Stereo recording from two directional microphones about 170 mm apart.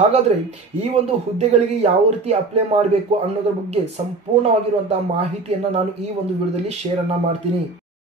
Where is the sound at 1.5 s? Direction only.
40° right (ahead or behind).